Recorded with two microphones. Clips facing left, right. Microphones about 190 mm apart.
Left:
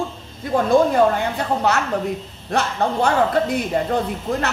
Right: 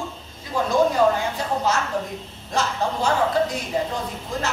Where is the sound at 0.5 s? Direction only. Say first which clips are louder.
Left 4 dB; 55° left (ahead or behind).